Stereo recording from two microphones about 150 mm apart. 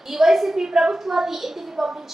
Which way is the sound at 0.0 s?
Centre (ahead or behind).